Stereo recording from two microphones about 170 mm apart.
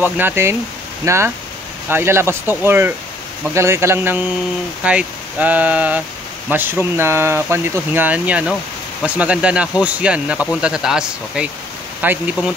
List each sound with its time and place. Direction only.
0.0 s speech: 10° right (ahead or behind)